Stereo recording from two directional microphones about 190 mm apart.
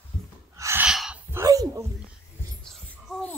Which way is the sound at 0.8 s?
5° right (ahead or behind).